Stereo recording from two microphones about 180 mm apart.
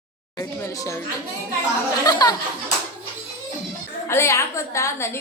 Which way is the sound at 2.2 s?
20° left (ahead or behind).